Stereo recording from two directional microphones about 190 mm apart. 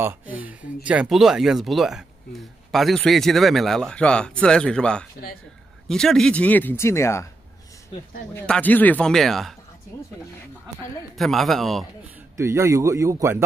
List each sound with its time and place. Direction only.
0.0 s speech: 10° right (ahead or behind); by 7.2 s 15° left (ahead or behind)
8.4 s speech: 10° left (ahead or behind)
11.1 s speech: centre (ahead or behind)
12.4 s speech: 15° right (ahead or behind)